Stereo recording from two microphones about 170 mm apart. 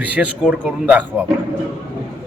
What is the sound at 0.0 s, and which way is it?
A man's voice, 10° right (ahead or behind).